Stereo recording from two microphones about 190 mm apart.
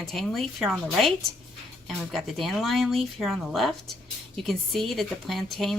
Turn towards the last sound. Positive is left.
turn(degrees=0)  # may be behind; listen again after turning